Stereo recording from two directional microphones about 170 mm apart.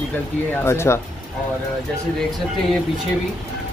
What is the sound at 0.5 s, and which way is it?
Speech, 15° left (ahead or behind).